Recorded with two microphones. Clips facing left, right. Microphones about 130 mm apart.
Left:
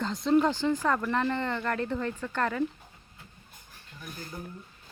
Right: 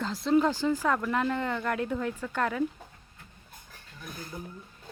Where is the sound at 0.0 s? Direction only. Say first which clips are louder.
Even; 5° right (ahead or behind).